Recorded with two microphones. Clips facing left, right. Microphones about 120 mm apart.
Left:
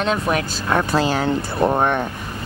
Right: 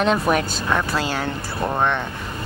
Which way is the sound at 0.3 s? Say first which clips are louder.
Right 1 dB; 5° right (ahead or behind).